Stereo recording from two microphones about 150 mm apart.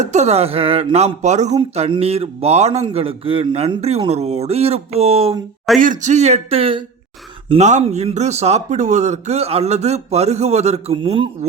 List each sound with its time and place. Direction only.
0.0 s a man's voice: 50° right (ahead or behind)
5.8 s a man's voice: 55° right (ahead or behind); by 6.8 s 35° right (ahead or behind)
7.5 s a man's voice: 50° right (ahead or behind)